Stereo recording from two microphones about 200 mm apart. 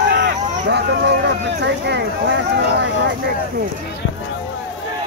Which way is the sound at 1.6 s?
60° right (ahead or behind).